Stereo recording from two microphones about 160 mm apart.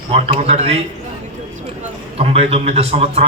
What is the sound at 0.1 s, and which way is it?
Speech, 40° right (ahead or behind).